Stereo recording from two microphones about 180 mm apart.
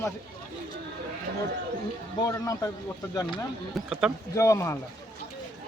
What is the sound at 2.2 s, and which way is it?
Speech, 20° left (ahead or behind).